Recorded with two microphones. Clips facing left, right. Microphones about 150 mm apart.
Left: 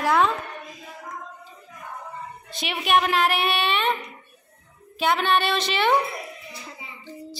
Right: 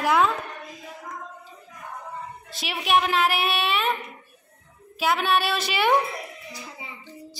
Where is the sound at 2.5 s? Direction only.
Centre (ahead or behind).